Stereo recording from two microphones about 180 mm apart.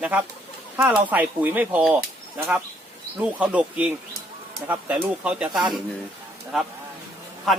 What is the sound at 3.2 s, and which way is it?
Speech, 5° right (ahead or behind).